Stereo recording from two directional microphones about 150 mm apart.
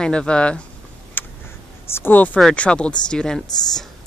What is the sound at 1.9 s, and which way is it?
Speech, 15° left (ahead or behind).